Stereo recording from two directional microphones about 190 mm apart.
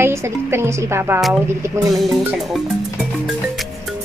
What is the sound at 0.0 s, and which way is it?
Speech, 15° right (ahead or behind).